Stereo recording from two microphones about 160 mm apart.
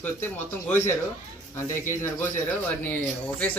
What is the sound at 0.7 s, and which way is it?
Speech, 15° left (ahead or behind).